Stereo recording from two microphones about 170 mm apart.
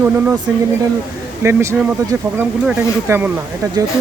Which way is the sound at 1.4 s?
15° right (ahead or behind).